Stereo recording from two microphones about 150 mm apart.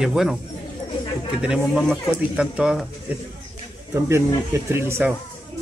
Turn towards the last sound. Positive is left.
turn(degrees=-15)  # may be behind; listen again after turning